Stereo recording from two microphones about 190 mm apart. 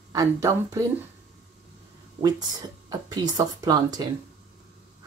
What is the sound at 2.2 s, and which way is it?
Speech, 20° right (ahead or behind).